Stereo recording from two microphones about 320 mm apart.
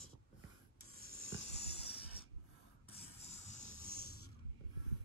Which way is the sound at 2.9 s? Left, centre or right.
Centre.